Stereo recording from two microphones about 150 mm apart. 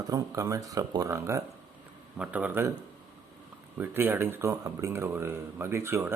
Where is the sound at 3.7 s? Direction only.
15° right (ahead or behind).